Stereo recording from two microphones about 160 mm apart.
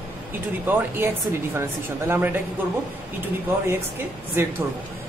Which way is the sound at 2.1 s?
10° right (ahead or behind).